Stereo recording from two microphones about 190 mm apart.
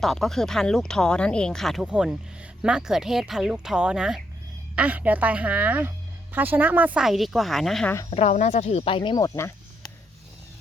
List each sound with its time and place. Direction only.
0.0 s speech: centre (ahead or behind)
8.1 s speech: 35° left (ahead or behind); by 9.5 s 15° left (ahead or behind)